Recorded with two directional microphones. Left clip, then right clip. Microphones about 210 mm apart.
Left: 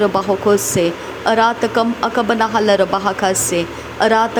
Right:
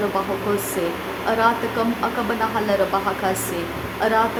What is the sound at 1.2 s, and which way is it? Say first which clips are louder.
Speech: left 5 dB; 30° left (ahead or behind).